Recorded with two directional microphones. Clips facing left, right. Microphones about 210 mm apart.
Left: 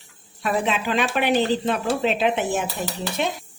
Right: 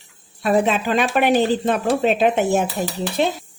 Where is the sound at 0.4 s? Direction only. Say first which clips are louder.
Right 5 dB; 40° right (ahead or behind).